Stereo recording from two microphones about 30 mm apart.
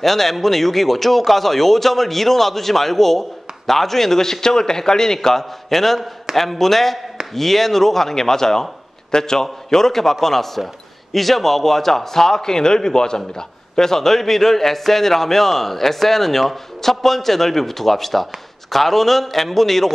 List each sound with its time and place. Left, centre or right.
0.0 s speech: centre